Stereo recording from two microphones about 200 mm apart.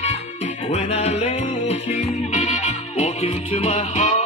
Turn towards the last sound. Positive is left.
turn(degrees=35)  # may be behind; listen again after turning